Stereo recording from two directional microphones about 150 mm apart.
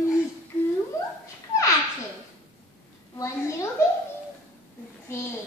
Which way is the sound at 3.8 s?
20° left (ahead or behind).